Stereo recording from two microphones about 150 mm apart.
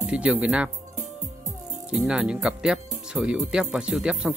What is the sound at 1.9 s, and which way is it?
Speech, 5° right (ahead or behind).